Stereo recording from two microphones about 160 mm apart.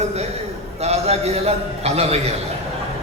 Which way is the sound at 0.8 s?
40° right (ahead or behind).